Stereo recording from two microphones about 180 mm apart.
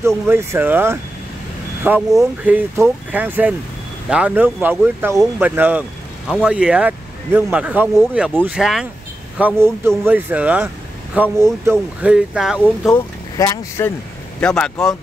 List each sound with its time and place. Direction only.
0.0 s speech: 15° right (ahead or behind)
2.0 s speech: 15° right (ahead or behind)
12.5 s speech: 5° left (ahead or behind)
14.4 s speech: 5° left (ahead or behind)